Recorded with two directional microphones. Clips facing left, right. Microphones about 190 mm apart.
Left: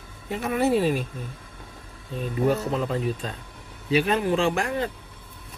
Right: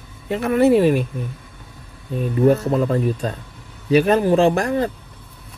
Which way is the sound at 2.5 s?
50° right (ahead or behind).